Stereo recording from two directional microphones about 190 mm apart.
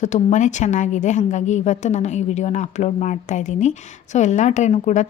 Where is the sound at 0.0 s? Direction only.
40° left (ahead or behind).